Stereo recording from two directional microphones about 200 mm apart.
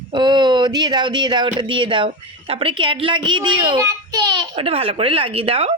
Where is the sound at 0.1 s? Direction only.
20° right (ahead or behind).